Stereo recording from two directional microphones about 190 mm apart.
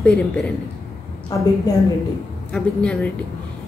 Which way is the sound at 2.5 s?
5° left (ahead or behind).